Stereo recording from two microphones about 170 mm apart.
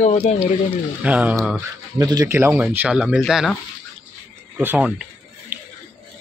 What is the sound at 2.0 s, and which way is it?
Speech, 20° right (ahead or behind).